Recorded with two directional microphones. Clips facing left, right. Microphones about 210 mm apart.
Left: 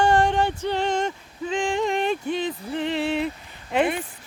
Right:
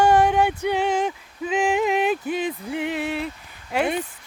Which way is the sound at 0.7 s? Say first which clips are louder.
Right 2 dB; 10° right (ahead or behind).